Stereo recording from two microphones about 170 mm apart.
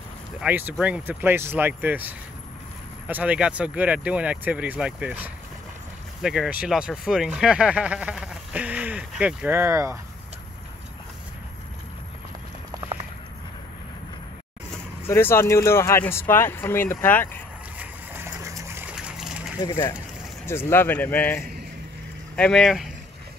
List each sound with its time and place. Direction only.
0.4 s speech: 10° right (ahead or behind)
15.0 s speech: 15° left (ahead or behind)
17.7 s a sound: 15° right (ahead or behind)
19.6 s speech: 20° left (ahead or behind); by 22.8 s centre (ahead or behind)